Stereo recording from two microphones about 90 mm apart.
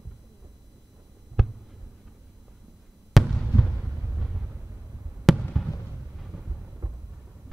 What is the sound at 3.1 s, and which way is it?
Basketball bounce, centre (ahead or behind).